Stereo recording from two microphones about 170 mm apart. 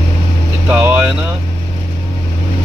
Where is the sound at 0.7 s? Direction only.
10° right (ahead or behind).